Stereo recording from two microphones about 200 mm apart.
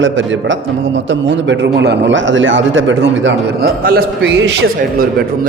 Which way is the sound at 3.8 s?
45° right (ahead or behind).